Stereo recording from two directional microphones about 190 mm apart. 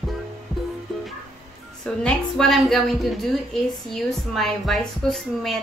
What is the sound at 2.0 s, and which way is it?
Speech, centre (ahead or behind).